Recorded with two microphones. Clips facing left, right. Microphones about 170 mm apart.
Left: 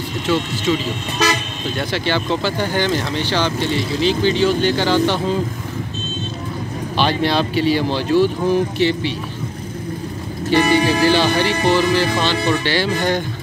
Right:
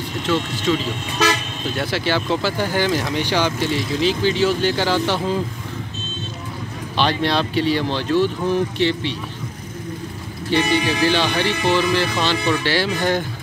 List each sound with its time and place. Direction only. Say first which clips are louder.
0.3 s speech: left 1 dB; 5° left (ahead or behind)
7.0 s speech: left 2 dB; 5° left (ahead or behind)
10.5 s speech: left 4 dB; 40° left (ahead or behind)
11.7 s speech: left 2 dB; 5° left (ahead or behind)